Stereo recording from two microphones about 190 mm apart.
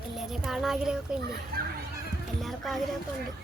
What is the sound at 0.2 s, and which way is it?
Speech, centre (ahead or behind).